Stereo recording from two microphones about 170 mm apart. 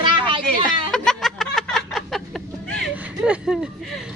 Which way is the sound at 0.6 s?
5° left (ahead or behind).